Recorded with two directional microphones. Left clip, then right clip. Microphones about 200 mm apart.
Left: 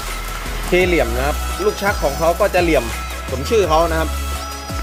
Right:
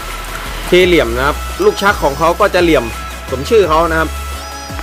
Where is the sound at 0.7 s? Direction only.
15° right (ahead or behind).